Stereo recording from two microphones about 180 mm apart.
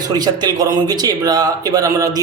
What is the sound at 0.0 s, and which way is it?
A man's voice, 20° right (ahead or behind).